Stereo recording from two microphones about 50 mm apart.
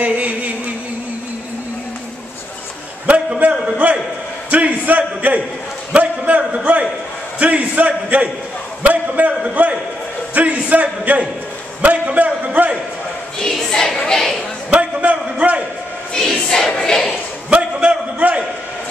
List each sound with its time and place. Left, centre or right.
0.0 s a sound: right
3.1 s a sound: right
6.5 s a man's voice: right
11.8 s a sound: right
12.6 s a man's voice: right
13.7 s speech: centre
14.7 s a man's voice: right
16.1 s choir: centre
17.5 s a man's voice: right